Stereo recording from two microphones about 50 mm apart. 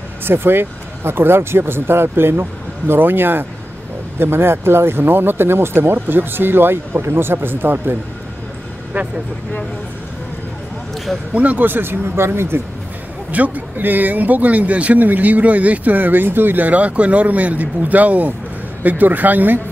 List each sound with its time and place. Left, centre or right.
0.2 s speech: right
8.9 s speech: right
11.3 s speech: right
13.3 s speech: right